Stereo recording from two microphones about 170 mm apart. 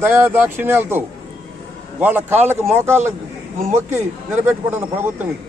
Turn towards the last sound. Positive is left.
turn(degrees=-15)  # may be behind; listen again after turning